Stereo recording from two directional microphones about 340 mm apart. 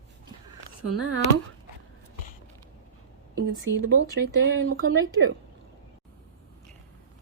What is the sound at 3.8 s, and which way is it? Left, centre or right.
Speech, right.